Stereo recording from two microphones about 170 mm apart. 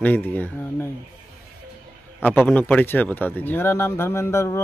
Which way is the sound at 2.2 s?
10° left (ahead or behind).